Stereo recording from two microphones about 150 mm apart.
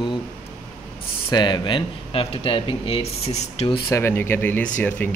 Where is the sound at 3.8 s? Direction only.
15° left (ahead or behind).